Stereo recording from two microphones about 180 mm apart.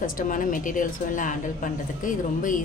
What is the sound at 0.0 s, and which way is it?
A woman's voice, 50° left (ahead or behind).